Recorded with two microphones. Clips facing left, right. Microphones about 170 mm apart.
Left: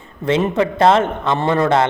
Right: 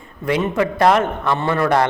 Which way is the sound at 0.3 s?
25° left (ahead or behind).